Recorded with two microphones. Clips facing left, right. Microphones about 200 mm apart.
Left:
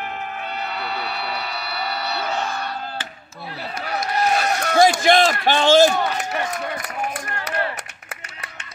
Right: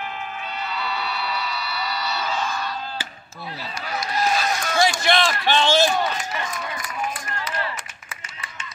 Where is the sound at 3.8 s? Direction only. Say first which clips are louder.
Left 2 dB; 60° left (ahead or behind).